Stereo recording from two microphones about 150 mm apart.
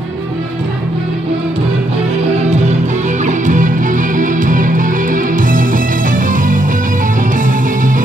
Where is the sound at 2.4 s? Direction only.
50° right (ahead or behind).